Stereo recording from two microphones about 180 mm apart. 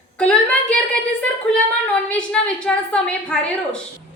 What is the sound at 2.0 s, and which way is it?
A woman's voice, 5° left (ahead or behind).